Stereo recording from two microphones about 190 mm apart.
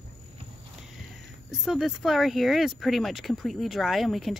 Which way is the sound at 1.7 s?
Centre (ahead or behind).